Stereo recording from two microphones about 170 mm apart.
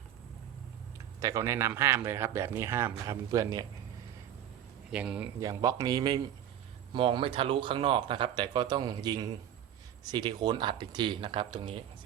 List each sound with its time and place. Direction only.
1.2 s a man's voice: 20° right (ahead or behind)
4.9 s speech: 5° right (ahead or behind)
5.4 s speech: 20° right (ahead or behind)